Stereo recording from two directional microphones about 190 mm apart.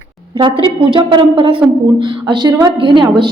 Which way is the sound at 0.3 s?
25° right (ahead or behind).